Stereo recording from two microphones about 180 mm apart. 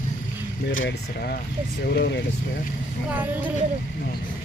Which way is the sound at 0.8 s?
65° left (ahead or behind).